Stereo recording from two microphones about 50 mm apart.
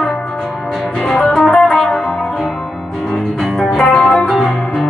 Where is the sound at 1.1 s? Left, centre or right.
Centre.